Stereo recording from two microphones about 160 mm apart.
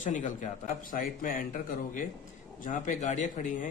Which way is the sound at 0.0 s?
50° left (ahead or behind).